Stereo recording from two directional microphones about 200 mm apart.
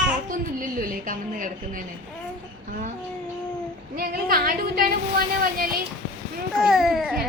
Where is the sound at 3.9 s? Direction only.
45° right (ahead or behind).